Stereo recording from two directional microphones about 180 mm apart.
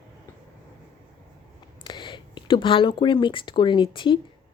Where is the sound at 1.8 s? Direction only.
25° left (ahead or behind).